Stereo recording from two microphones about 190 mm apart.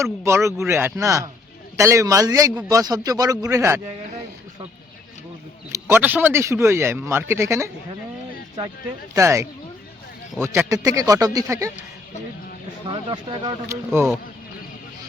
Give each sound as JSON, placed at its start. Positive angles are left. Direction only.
{"t": 0.0, "sound": "speech", "side_deg": -15}
{"t": 5.7, "sound": "speech", "side_deg": -10}
{"t": 9.1, "sound": "speech", "side_deg": -15}
{"t": 12.9, "sound": "speech", "side_deg": -25}